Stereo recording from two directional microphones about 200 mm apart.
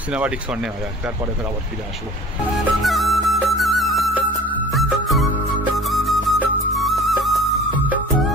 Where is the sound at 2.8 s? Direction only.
Centre (ahead or behind).